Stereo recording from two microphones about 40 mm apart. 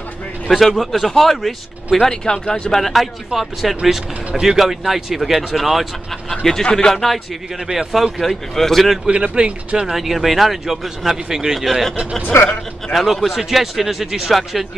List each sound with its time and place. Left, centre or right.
0.5 s a man's voice: centre
2.0 s speech: centre
2.7 s a man's voice: centre
6.6 s speech: centre
7.9 s a man's voice: centre
9.0 s speech: right
9.9 s a man's voice: centre
11.6 s a man's voice: centre
12.3 s a man's voice: left
12.9 s speech: centre